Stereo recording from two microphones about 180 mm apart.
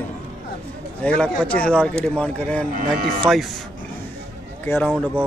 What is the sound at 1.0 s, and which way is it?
A man's voice, 5° left (ahead or behind).